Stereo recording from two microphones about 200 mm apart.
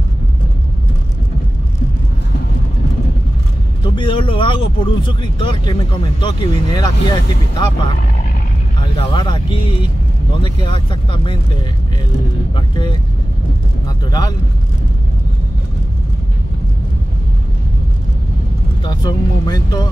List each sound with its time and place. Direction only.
3.9 s vehicle: 25° left (ahead or behind)
5.0 s speech: 25° left (ahead or behind)
9.0 s speech: 25° left (ahead or behind)
12.5 s speech: 20° left (ahead or behind)
13.8 s vehicle: 20° left (ahead or behind)
18.9 s speech: 20° left (ahead or behind)